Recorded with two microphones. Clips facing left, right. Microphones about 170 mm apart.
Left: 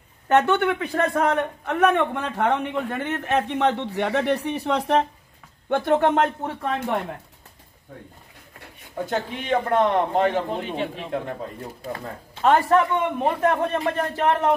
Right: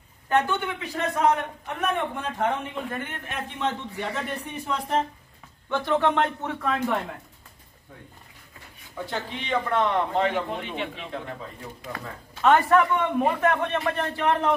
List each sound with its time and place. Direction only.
0.3 s a man's voice: 65° left (ahead or behind)
5.7 s speech: 50° left (ahead or behind)
8.9 s speech: 50° left (ahead or behind)
11.8 s a man's voice: 35° left (ahead or behind)